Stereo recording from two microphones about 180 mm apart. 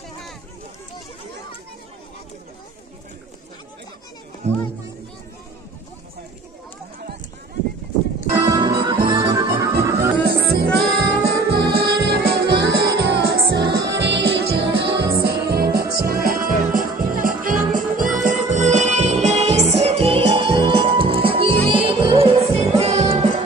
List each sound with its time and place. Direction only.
4.4 s speech: 35° right (ahead or behind)
8.5 s music: 25° right (ahead or behind)
10.1 s music: 65° right (ahead or behind); by 23.4 s 35° right (ahead or behind)